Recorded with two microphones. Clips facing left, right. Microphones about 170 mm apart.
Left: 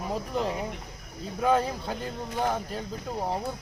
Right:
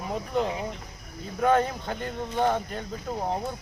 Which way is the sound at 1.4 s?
5° left (ahead or behind).